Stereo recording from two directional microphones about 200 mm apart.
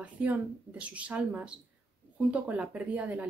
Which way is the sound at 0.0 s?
5° right (ahead or behind).